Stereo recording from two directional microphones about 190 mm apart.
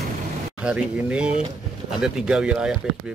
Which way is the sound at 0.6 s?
5° right (ahead or behind).